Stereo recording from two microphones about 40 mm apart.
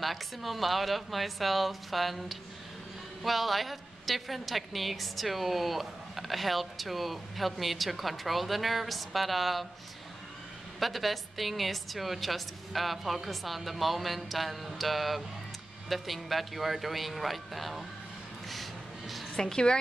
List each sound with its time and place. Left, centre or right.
0.0 s a woman's voice: centre
10.8 s a woman's voice: centre
18.5 s a sound: centre
19.3 s a woman's voice: centre